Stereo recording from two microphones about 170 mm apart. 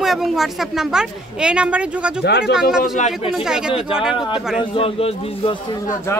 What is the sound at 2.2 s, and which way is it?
Speech, 75° left (ahead or behind).